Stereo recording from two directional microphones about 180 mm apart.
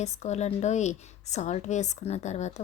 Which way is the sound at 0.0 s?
40° left (ahead or behind).